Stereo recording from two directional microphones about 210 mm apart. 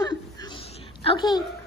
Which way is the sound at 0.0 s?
20° left (ahead or behind).